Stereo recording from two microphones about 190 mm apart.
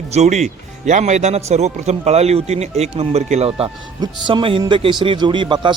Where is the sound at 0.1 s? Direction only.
35° right (ahead or behind).